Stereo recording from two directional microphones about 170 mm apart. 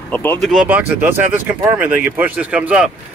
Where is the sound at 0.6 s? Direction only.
10° right (ahead or behind).